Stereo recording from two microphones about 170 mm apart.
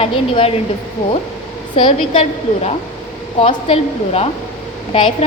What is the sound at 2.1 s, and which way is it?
A woman's voice, 40° left (ahead or behind).